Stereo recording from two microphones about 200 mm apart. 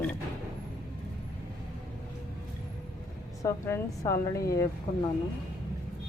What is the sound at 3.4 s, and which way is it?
Speech, 15° left (ahead or behind).